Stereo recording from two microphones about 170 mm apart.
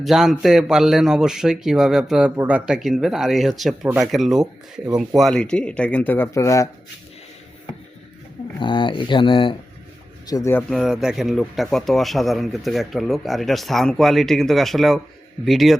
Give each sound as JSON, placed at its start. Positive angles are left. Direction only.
{"t": 0.0, "sound": "speech", "side_deg": 0}
{"t": 8.5, "sound": "speech", "side_deg": 30}
{"t": 10.2, "sound": "speech", "side_deg": 20}
{"t": 10.7, "sound": "speech", "side_deg": 0}